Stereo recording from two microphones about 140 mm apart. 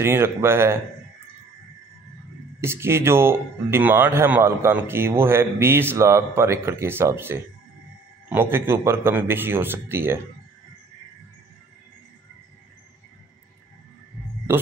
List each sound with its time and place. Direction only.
0.0 s speech: 15° right (ahead or behind)
2.6 s speech: 20° right (ahead or behind)